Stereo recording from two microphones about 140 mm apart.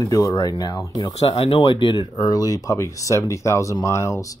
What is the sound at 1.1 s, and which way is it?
Speech, 45° left (ahead or behind).